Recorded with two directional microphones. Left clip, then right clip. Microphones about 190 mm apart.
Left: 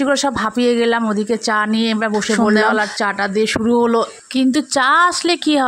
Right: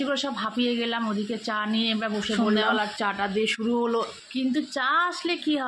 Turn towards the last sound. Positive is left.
turn(degrees=60)  # may be behind; listen again after turning